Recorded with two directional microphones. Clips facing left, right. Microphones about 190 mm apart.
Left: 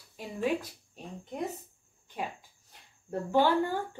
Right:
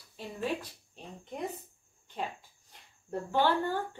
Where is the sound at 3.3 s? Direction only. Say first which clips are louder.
Left 3 dB; 10° left (ahead or behind).